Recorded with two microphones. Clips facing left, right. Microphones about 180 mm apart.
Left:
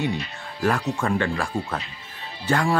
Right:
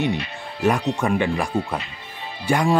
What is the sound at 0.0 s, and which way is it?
Speech, 20° right (ahead or behind).